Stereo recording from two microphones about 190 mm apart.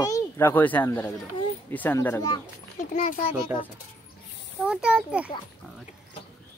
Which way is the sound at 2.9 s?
45° left (ahead or behind).